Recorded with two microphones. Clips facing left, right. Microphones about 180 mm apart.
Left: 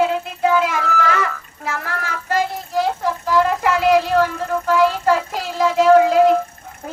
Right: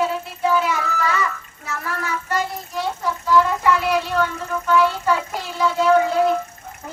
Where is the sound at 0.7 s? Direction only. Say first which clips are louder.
Left 3 dB; 90° left.